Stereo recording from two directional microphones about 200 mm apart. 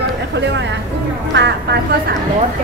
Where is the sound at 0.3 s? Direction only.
60° right (ahead or behind).